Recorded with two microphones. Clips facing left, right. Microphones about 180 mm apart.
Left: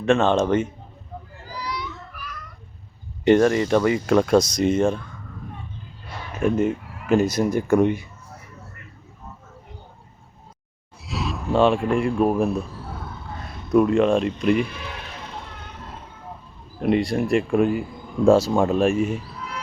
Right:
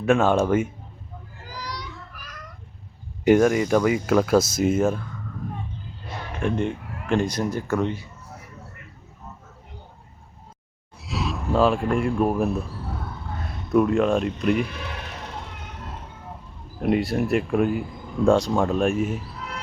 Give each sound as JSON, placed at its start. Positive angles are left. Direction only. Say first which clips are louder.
{"t": 0.0, "sound": "speech", "louder": "left 1 dB", "side_deg": -10}
{"t": 2.1, "sound": "cat", "louder": "left 5 dB", "side_deg": -45}
{"t": 3.2, "sound": "speech", "louder": "left 1 dB", "side_deg": -5}
{"t": 6.4, "sound": "speech", "louder": "left 4 dB", "side_deg": 5}
{"t": 11.0, "sound": "speech", "louder": "even", "side_deg": 0}
{"t": 13.7, "sound": "speech", "louder": "left 2 dB", "side_deg": 0}
{"t": 16.8, "sound": "speech", "louder": "left 1 dB", "side_deg": 0}